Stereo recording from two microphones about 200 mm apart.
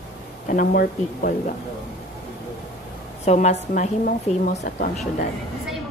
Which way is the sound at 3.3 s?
35° left (ahead or behind).